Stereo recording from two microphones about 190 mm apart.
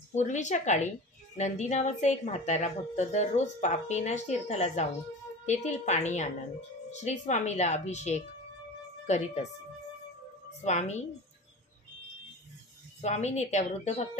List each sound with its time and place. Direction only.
0.1 s a woman's voice: 40° left (ahead or behind)
10.6 s a woman's voice: 35° left (ahead or behind)
13.0 s a woman's voice: 35° left (ahead or behind)